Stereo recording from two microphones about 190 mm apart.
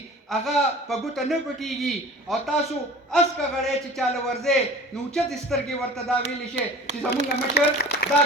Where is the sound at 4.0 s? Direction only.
Centre (ahead or behind).